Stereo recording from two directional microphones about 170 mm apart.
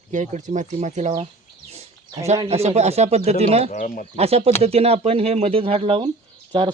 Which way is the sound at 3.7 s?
55° left (ahead or behind).